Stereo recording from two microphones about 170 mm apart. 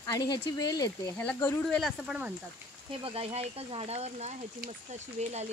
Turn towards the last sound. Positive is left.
turn(degrees=-40)  # may be behind; listen again after turning